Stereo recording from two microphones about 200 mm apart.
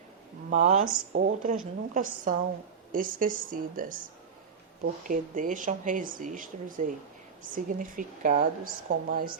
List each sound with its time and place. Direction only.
0.5 s a woman's voice: 35° right (ahead or behind)
5.0 s a woman's voice: 40° right (ahead or behind)